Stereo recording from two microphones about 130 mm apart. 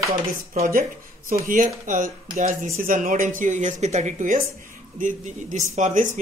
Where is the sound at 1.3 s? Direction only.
90° right.